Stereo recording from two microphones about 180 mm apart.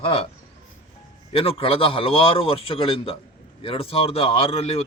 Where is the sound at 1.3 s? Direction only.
30° left (ahead or behind).